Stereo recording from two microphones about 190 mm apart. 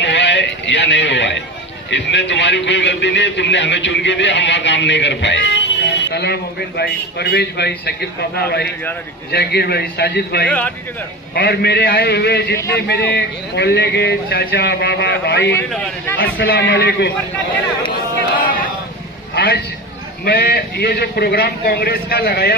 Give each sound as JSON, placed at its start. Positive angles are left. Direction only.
{"t": 0.0, "sound": "a sound", "side_deg": 70}
{"t": 1.9, "sound": "a man's voice", "side_deg": 70}
{"t": 15.7, "sound": "a man's voice", "side_deg": 5}
{"t": 16.3, "sound": "a man's voice", "side_deg": 70}
{"t": 19.3, "sound": "a sound", "side_deg": 60}
{"t": 20.2, "sound": "speech", "side_deg": 55}